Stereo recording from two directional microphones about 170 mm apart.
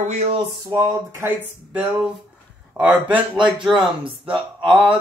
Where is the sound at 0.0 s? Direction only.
45° right (ahead or behind).